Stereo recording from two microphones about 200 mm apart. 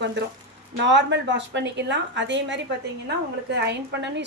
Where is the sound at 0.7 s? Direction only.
60° right (ahead or behind).